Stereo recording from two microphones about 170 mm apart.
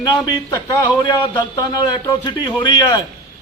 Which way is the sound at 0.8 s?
25° left (ahead or behind).